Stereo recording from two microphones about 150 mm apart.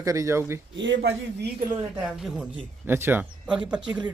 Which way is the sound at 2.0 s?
5° right (ahead or behind).